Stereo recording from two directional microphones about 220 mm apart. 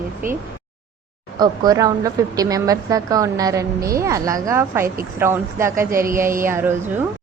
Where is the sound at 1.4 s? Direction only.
15° right (ahead or behind).